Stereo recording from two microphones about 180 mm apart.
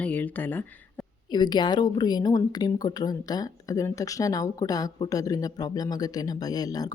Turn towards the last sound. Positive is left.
turn(degrees=20)  # may be behind; listen again after turning